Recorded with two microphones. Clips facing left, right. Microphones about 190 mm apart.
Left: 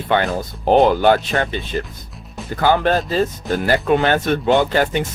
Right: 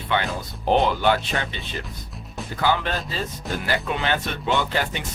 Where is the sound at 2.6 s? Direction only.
50° left (ahead or behind).